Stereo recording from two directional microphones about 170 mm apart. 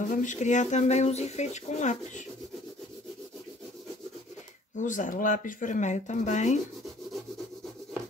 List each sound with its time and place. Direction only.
0.1 s speech: 45° left (ahead or behind)
4.7 s speech: 50° left (ahead or behind)